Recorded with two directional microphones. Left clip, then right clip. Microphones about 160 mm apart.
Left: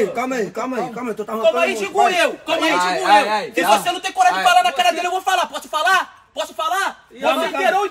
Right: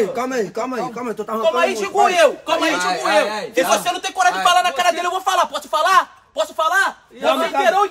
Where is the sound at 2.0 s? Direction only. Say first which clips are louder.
Right 4 dB; 25° right (ahead or behind).